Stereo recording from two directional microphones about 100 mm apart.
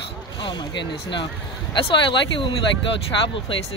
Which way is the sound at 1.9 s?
55° left (ahead or behind).